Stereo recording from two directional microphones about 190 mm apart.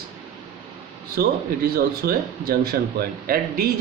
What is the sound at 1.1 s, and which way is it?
Speech, 55° right (ahead or behind).